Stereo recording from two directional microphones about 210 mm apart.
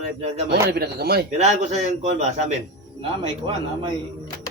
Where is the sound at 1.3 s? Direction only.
30° right (ahead or behind).